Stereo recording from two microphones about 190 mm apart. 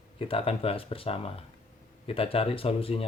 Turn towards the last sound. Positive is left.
turn(degrees=30)  # may be behind; listen again after turning